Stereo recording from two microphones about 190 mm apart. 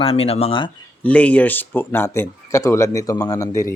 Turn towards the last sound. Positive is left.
turn(degrees=15)  # may be behind; listen again after turning